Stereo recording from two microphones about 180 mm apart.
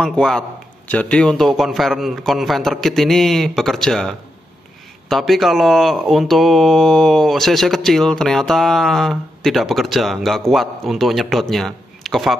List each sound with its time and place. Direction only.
0.0 s speech: 5° left (ahead or behind)
5.1 s speech: centre (ahead or behind)